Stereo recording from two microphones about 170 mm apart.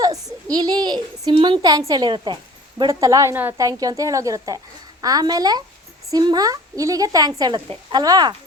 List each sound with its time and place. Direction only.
0.5 s a woman's voice: 25° right (ahead or behind)